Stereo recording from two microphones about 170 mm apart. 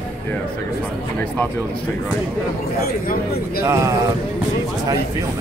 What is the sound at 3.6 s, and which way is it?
Speech, 15° right (ahead or behind).